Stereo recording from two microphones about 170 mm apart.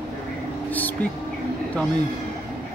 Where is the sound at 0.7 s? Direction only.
10° left (ahead or behind).